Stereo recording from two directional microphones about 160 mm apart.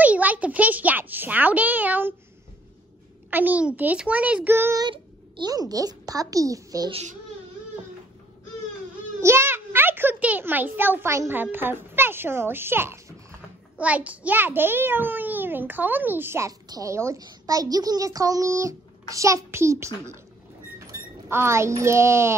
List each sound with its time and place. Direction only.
0.0 s a child's voice: 10° right (ahead or behind)
3.3 s a child's voice: 10° right (ahead or behind)
4.8 s a child's voice: 30° right (ahead or behind)
6.9 s a child's voice: 40° right (ahead or behind)
9.2 s a child's voice: 15° right (ahead or behind)